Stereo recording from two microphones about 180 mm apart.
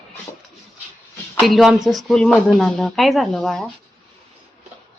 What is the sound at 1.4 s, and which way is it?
A woman's voice, centre (ahead or behind).